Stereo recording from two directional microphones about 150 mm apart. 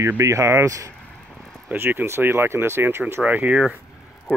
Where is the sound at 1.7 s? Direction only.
15° right (ahead or behind).